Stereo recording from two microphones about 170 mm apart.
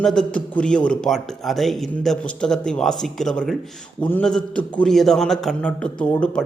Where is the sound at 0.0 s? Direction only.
5° left (ahead or behind).